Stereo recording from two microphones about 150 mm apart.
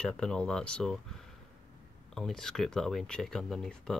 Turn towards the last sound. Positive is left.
turn(degrees=5)  # may be behind; listen again after turning